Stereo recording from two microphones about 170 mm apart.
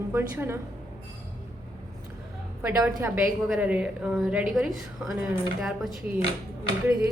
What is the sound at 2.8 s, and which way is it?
Speech, 15° right (ahead or behind).